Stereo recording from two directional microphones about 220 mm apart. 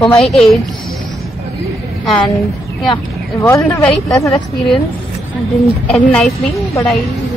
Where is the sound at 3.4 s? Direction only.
10° left (ahead or behind).